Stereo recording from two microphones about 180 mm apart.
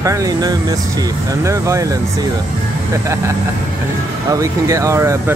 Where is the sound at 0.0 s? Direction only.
15° right (ahead or behind).